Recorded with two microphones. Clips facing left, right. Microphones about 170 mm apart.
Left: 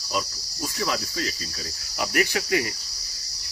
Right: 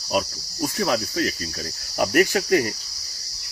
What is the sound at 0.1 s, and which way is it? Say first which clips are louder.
Cricket: right 5 dB; 55° right (ahead or behind).